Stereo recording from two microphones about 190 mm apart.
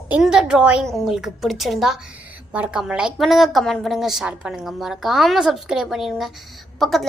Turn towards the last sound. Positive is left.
turn(degrees=0)  # may be behind; listen again after turning